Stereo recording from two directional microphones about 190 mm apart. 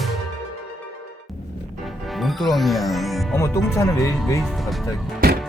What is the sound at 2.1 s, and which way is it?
Speech, centre (ahead or behind).